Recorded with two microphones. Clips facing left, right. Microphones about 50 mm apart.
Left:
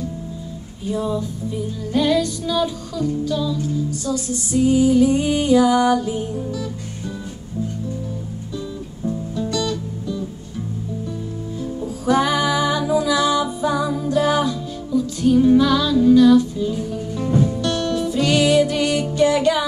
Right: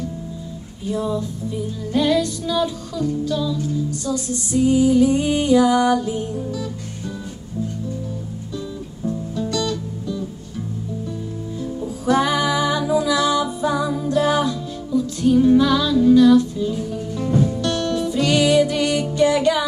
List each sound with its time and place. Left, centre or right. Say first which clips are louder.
0.8 s music: even; centre
9.0 s music: even; centre
12.1 s music: even; centre